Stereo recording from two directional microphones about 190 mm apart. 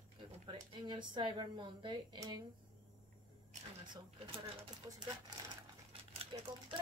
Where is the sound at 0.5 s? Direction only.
25° right (ahead or behind).